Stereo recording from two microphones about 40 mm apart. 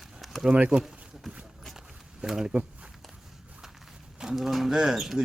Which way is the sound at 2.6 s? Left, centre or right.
Right.